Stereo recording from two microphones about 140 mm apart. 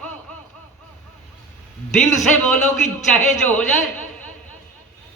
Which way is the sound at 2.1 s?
60° left (ahead or behind).